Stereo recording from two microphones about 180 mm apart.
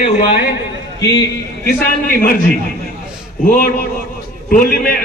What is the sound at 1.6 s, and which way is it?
Speech, 55° left (ahead or behind).